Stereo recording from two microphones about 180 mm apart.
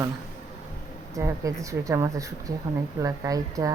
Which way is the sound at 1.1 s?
15° right (ahead or behind).